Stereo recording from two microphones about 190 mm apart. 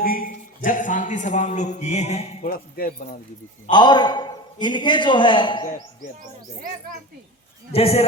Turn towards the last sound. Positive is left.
turn(degrees=35)  # may be behind; listen again after turning